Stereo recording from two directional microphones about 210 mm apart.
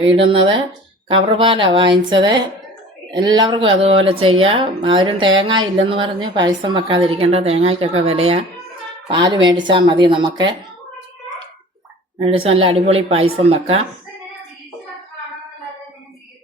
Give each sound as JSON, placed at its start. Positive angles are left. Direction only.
{"t": 0.0, "sound": "a woman's voice", "side_deg": -25}
{"t": 12.2, "sound": "a woman's voice", "side_deg": -25}